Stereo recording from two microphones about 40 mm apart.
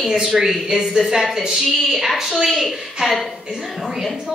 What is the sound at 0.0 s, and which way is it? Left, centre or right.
A woman's voice, centre.